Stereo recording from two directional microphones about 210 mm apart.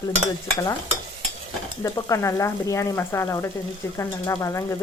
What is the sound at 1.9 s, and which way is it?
A woman's voice, 15° left (ahead or behind).